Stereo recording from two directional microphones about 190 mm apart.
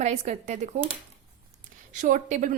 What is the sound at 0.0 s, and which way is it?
Speech, 35° right (ahead or behind).